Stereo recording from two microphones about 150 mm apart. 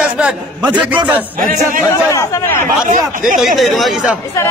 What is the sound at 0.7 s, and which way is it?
Speech, 10° right (ahead or behind).